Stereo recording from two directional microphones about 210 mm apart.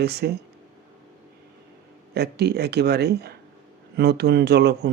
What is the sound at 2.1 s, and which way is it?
Speech, 50° right (ahead or behind).